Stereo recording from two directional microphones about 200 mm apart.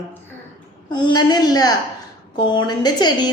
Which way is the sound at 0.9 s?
25° left (ahead or behind).